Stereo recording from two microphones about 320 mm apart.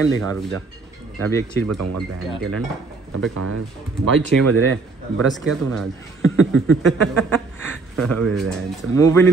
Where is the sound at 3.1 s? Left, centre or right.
Right.